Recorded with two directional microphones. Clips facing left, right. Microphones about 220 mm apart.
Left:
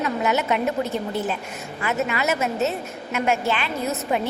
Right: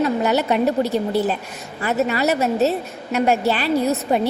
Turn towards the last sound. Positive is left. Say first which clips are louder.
# right 6 dB
turn(degrees=-35)  # may be behind; listen again after turning